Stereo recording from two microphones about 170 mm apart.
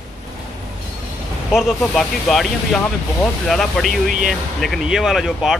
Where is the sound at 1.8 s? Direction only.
5° left (ahead or behind).